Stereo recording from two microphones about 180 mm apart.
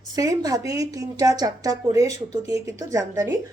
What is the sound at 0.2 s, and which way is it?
A woman's voice, 20° right (ahead or behind).